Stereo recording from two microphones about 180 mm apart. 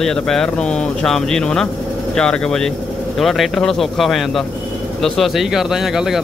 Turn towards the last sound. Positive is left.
turn(degrees=0)  # may be behind; listen again after turning